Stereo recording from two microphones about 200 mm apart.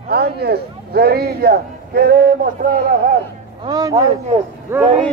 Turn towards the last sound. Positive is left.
turn(degrees=-10)  # may be behind; listen again after turning